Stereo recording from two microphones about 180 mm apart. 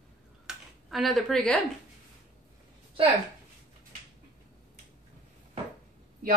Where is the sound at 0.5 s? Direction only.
Centre (ahead or behind).